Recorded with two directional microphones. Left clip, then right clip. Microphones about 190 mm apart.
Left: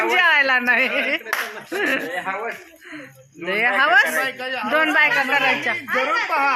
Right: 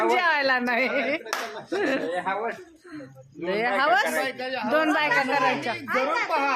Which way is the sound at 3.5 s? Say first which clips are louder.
Left 5 dB; 15° left (ahead or behind).